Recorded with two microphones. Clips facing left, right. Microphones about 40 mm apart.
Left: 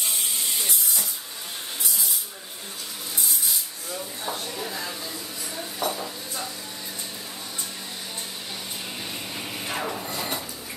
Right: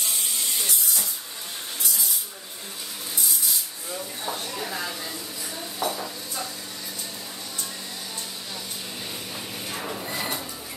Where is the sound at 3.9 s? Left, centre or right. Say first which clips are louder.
Even; centre.